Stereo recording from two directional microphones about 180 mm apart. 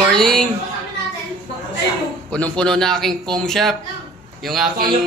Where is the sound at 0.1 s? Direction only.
5° left (ahead or behind).